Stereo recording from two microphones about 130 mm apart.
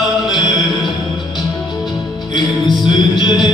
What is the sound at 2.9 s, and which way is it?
Music, 35° left (ahead or behind).